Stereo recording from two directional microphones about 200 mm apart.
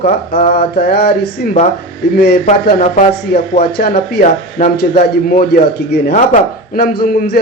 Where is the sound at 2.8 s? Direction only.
40° left (ahead or behind).